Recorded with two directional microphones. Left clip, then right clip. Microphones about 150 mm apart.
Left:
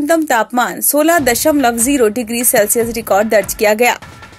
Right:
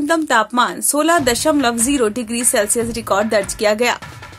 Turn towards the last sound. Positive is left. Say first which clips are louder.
# left 4 dB
turn(degrees=20)  # may be behind; listen again after turning